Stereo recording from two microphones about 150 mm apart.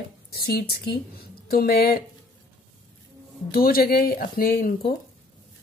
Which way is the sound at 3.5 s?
80° left.